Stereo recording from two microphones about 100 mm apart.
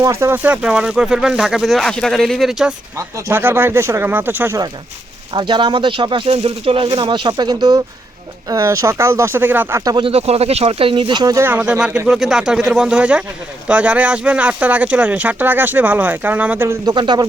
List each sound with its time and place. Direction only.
0.0 s speech: 30° right (ahead or behind)
0.4 s speech: 10° right (ahead or behind)
3.2 s speech: 25° right (ahead or behind)
5.3 s speech: 50° right (ahead or behind)
8.4 s speech: 35° right (ahead or behind)
10.0 s speech: 80° right; by 11.3 s 45° right (ahead or behind)
11.3 s speech: 20° right (ahead or behind)
11.6 s speech: 10° right (ahead or behind)
16.8 s speech: 50° right (ahead or behind)